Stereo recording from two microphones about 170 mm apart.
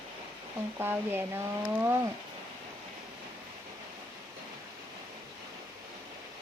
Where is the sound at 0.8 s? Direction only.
15° right (ahead or behind).